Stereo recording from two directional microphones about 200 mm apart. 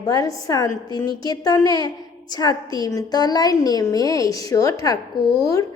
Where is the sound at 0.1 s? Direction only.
15° left (ahead or behind).